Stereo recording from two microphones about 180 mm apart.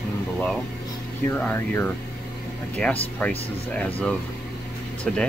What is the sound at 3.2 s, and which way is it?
Speech, 5° left (ahead or behind).